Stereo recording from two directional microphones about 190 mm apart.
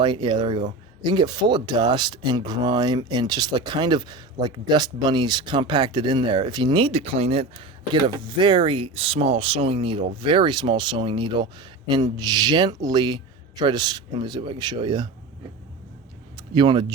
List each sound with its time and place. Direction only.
0.0 s speech: 25° right (ahead or behind)
16.6 s speech: 25° right (ahead or behind)